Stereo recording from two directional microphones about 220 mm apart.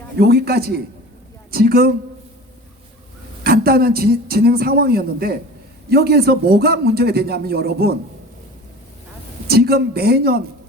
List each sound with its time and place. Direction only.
0.2 s a man's voice: 45° right (ahead or behind)
3.4 s a man's voice: 45° right (ahead or behind)
9.5 s a man's voice: 45° right (ahead or behind)